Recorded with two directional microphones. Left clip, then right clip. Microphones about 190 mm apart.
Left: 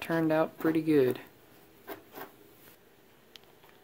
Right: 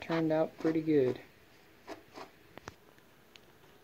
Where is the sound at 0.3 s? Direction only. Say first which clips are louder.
Left 3 dB; 15° left (ahead or behind).